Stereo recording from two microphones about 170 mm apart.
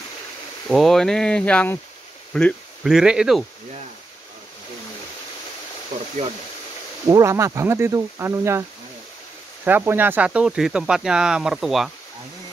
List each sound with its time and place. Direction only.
0.7 s speech: centre (ahead or behind)
7.1 s speech: 15° right (ahead or behind)
9.7 s speech: 10° right (ahead or behind)